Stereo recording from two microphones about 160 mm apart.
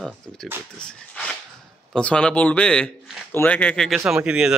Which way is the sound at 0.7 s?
5° left (ahead or behind).